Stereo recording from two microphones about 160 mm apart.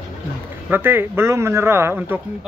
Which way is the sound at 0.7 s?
15° right (ahead or behind).